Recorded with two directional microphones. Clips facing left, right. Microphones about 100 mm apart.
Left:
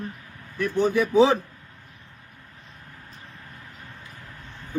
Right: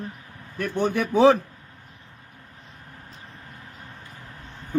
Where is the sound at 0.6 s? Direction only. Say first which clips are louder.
Left 2 dB; 55° right (ahead or behind).